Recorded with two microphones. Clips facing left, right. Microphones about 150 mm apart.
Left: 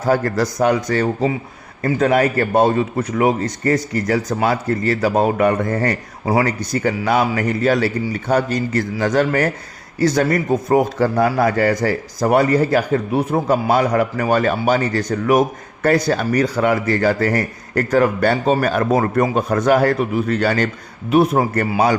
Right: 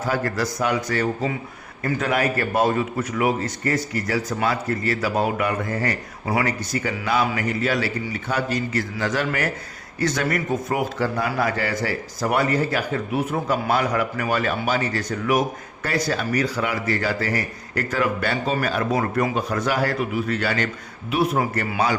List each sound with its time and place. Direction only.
0.0 s a man's voice: 40° left (ahead or behind)